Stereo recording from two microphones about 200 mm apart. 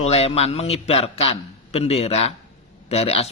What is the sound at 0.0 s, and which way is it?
A man's voice, 30° left (ahead or behind).